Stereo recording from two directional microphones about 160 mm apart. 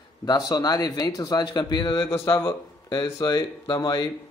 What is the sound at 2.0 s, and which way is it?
Speech, 15° left (ahead or behind).